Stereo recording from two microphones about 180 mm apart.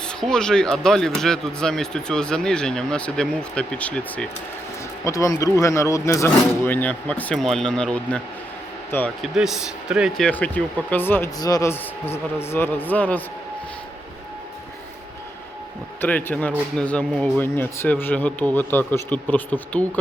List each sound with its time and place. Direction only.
0.0 s speech: 5° left (ahead or behind)
5.0 s speech: 15° left (ahead or behind)
9.2 s speech: centre (ahead or behind)
16.0 s speech: 10° left (ahead or behind)